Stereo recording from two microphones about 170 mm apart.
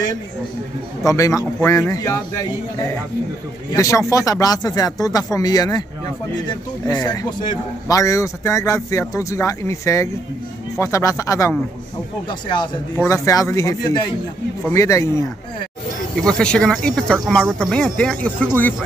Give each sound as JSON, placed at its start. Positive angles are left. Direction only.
{"t": 1.0, "sound": "speech", "side_deg": 20}
{"t": 3.7, "sound": "speech", "side_deg": 20}
{"t": 6.9, "sound": "speech", "side_deg": 25}
{"t": 16.2, "sound": "speech", "side_deg": 5}